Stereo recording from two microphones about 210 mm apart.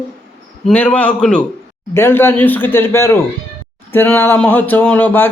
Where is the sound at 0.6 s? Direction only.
5° left (ahead or behind).